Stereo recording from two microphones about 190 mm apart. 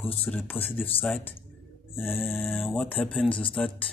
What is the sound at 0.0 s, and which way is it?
Speech, 30° left (ahead or behind).